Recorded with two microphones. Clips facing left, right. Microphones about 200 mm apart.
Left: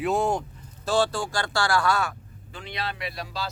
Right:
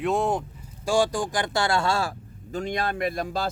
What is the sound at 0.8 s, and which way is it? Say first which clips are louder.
Speech: right 1 dB; 15° right (ahead or behind).